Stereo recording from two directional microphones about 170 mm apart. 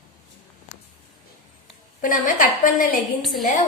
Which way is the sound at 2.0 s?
50° left (ahead or behind).